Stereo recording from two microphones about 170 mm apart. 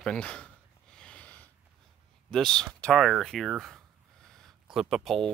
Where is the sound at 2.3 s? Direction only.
5° left (ahead or behind).